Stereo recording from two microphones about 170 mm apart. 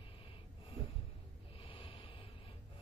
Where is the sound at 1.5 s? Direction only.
30° left (ahead or behind).